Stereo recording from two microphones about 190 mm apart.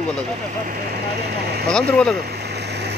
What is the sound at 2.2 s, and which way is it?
Vehicle, 60° right (ahead or behind).